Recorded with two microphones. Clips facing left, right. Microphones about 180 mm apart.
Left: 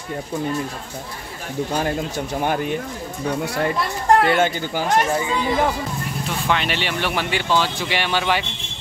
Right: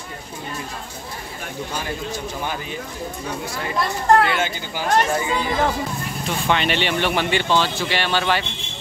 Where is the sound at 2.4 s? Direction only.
55° left (ahead or behind).